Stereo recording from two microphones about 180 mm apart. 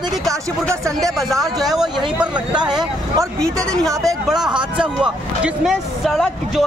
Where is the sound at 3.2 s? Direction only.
20° right (ahead or behind).